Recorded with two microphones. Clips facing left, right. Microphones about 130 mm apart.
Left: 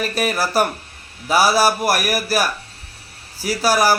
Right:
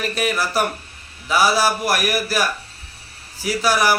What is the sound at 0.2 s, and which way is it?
Speech, 40° left (ahead or behind).